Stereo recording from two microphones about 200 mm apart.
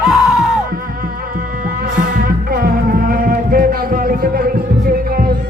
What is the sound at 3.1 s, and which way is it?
Music, 45° right (ahead or behind).